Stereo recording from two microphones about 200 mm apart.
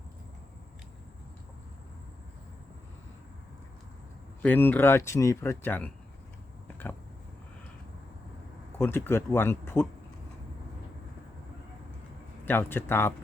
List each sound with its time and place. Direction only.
4.4 s speech: 10° left (ahead or behind)
8.8 s speech: 10° left (ahead or behind)
12.5 s speech: 10° left (ahead or behind)